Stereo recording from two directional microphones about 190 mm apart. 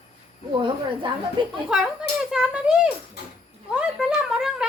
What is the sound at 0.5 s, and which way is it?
Speech, 25° right (ahead or behind).